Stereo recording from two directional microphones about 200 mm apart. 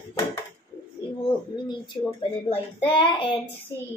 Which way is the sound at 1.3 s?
25° left (ahead or behind).